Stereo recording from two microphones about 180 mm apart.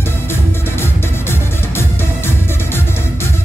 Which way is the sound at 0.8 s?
15° left (ahead or behind).